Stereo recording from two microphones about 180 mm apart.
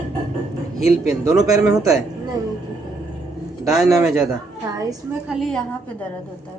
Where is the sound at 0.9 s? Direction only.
20° right (ahead or behind).